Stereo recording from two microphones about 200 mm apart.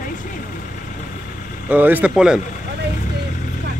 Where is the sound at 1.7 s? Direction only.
10° right (ahead or behind).